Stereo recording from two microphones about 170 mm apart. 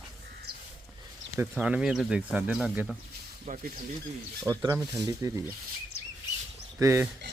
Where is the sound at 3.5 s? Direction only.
45° right (ahead or behind).